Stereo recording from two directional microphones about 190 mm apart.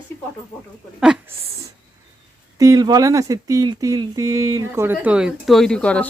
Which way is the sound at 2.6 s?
20° right (ahead or behind).